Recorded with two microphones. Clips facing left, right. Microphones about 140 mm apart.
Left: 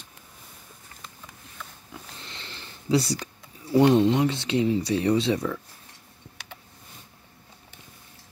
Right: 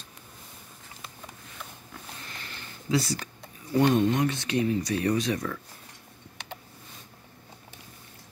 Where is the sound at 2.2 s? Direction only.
25° left (ahead or behind).